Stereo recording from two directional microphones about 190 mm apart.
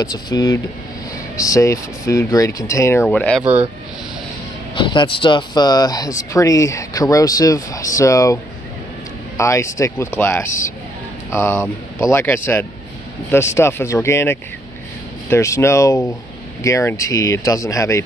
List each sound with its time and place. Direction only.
0.0 s speech: 20° left (ahead or behind)
4.7 s speech: 25° left (ahead or behind)
9.4 s speech: 15° left (ahead or behind)